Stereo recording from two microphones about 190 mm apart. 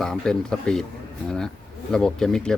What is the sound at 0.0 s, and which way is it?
Speech, 5° left (ahead or behind).